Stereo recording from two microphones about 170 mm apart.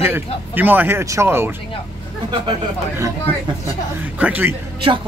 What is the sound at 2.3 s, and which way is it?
Speech, 25° right (ahead or behind).